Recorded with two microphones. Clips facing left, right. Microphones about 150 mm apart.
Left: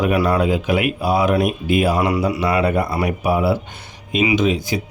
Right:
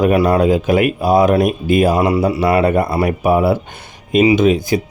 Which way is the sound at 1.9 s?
30° right (ahead or behind).